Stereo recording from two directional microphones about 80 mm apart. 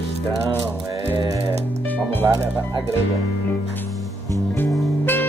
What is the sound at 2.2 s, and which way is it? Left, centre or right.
Speech, right.